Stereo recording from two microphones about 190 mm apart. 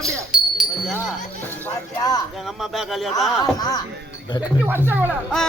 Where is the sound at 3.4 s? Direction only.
20° left (ahead or behind).